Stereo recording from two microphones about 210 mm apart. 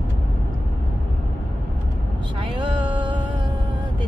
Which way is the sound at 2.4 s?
25° right (ahead or behind).